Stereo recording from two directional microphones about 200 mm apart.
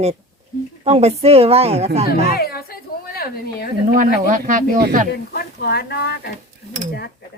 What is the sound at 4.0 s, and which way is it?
A woman's voice, 40° right (ahead or behind).